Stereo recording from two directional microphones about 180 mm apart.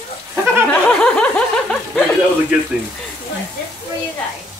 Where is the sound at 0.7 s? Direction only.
5° left (ahead or behind).